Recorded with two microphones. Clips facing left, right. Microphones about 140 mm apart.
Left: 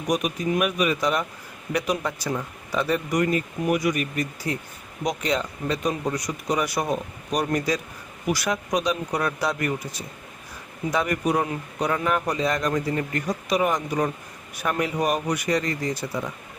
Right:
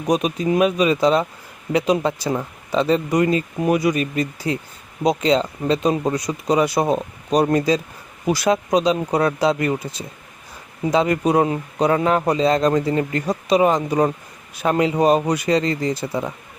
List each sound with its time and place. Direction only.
0.1 s a man's voice: 25° right (ahead or behind)
5.3 s a man's voice: 25° right (ahead or behind)